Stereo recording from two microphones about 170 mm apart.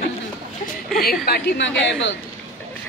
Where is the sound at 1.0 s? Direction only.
65° left (ahead or behind); by 1.7 s 85° left.